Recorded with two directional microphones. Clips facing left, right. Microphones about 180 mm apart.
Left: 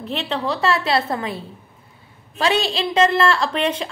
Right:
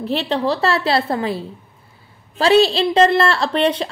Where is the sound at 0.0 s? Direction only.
35° right (ahead or behind).